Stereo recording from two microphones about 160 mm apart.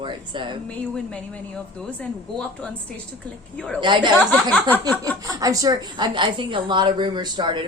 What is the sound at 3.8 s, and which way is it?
Speech, 30° right (ahead or behind).